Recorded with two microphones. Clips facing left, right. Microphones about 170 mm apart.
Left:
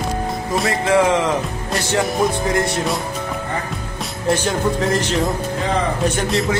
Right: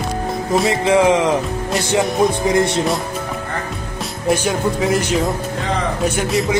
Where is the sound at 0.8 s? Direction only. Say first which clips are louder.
Right 1 dB; 20° right (ahead or behind).